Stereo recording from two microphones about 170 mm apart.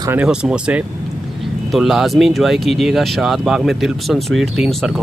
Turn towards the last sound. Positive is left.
turn(degrees=0)  # may be behind; listen again after turning